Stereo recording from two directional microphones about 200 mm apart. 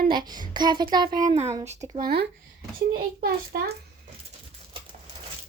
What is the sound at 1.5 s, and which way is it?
Speech, 15° right (ahead or behind).